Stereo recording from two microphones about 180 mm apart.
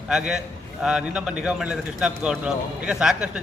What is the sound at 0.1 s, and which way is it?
A man's voice, 5° right (ahead or behind).